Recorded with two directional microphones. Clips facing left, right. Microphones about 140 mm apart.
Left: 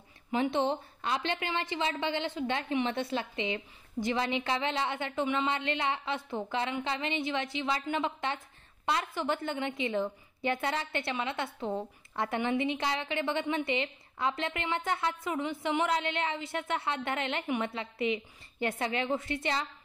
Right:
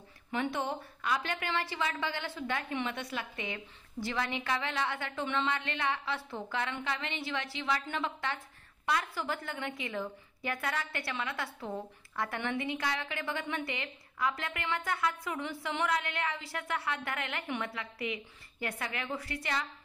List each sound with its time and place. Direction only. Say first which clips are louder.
0.3 s a woman's voice: left 5 dB; 25° left (ahead or behind)